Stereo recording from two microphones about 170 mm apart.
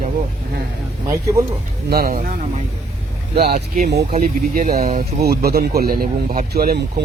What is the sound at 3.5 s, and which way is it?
Speech, 45° right (ahead or behind).